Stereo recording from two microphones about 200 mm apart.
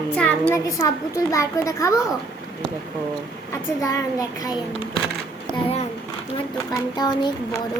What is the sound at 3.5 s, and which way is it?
A woman's voice, 15° left (ahead or behind).